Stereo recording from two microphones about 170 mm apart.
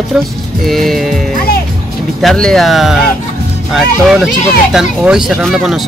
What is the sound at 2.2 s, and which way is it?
Speech, 5° left (ahead or behind).